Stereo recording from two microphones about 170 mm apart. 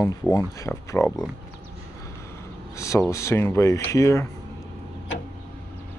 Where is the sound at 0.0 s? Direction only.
15° left (ahead or behind).